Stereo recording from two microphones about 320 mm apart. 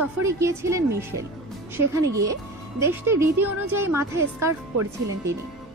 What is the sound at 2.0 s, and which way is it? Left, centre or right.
Speech, right.